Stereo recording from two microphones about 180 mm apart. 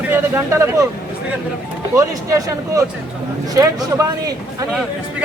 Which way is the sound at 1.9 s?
20° right (ahead or behind).